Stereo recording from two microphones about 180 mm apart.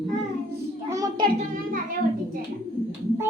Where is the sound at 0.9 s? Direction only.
20° right (ahead or behind).